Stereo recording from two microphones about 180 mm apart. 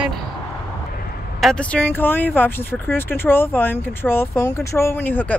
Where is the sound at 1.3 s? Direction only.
5° left (ahead or behind).